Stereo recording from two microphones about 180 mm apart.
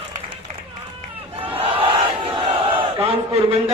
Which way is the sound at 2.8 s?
30° right (ahead or behind).